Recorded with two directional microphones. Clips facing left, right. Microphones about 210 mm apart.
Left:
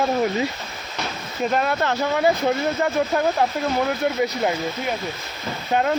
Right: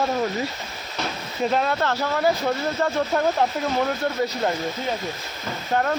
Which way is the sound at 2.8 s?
5° left (ahead or behind).